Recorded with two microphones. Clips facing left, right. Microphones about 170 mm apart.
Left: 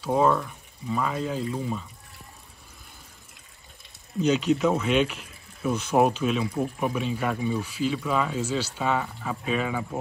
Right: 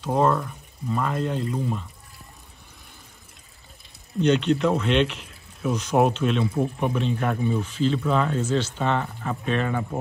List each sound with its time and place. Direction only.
0.0 s speech: centre (ahead or behind)
4.2 s speech: 5° left (ahead or behind)